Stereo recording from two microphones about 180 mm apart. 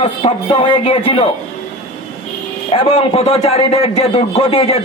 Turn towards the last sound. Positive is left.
turn(degrees=35)  # may be behind; listen again after turning